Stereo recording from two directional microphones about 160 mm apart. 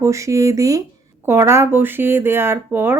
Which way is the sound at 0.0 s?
20° right (ahead or behind).